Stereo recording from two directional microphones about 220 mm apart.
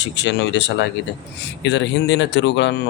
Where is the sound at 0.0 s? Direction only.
55° left (ahead or behind).